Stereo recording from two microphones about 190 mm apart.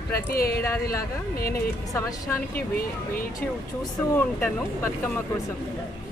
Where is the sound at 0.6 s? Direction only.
15° left (ahead or behind).